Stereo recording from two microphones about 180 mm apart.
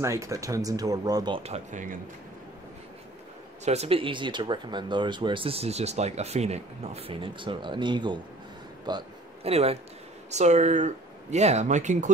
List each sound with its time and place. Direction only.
0.0 s speech: 15° right (ahead or behind); by 2.0 s 45° right (ahead or behind)
3.6 s speech: 35° right (ahead or behind)
8.8 s a sound: 30° right (ahead or behind)
10.3 s speech: 40° right (ahead or behind)